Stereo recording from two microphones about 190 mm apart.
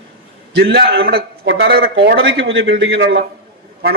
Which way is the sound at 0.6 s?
55° right (ahead or behind).